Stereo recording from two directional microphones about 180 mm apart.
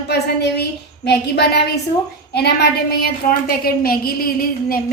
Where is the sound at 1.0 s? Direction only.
65° left (ahead or behind).